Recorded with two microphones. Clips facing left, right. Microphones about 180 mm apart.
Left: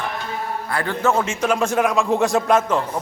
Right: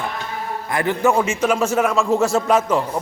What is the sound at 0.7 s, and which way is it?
A man's voice, 15° right (ahead or behind).